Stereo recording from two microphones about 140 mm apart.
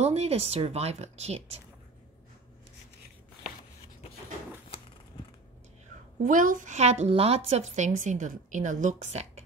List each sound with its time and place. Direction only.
0.0 s speech: 50° right (ahead or behind)
6.2 s a woman's voice: 75° right (ahead or behind); by 9.4 s 50° right (ahead or behind)